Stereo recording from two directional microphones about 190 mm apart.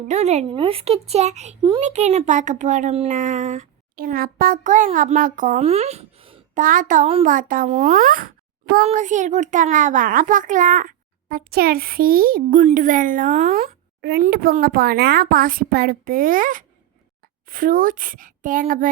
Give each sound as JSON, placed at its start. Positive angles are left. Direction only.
{"t": 0.1, "sound": "speech", "side_deg": -35}
{"t": 6.5, "sound": "a child's voice", "side_deg": -45}